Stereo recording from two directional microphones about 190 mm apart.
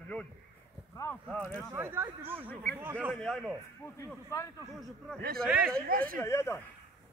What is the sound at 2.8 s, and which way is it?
Speech, 10° right (ahead or behind).